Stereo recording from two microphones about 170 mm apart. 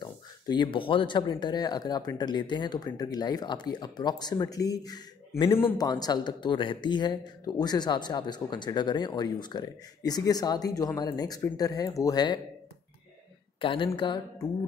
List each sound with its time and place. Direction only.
0.0 s speech: 25° left (ahead or behind)
13.6 s speech: 30° left (ahead or behind)